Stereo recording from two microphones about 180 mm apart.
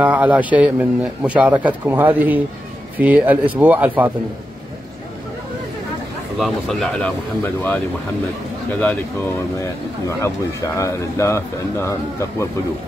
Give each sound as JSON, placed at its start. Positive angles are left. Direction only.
{"t": 0.0, "sound": "a man's voice", "side_deg": -10}
{"t": 6.3, "sound": "speech", "side_deg": 0}
{"t": 8.8, "sound": "speech", "side_deg": 10}